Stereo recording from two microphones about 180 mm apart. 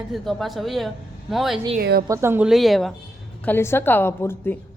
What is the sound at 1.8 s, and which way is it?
Speech, 60° right (ahead or behind).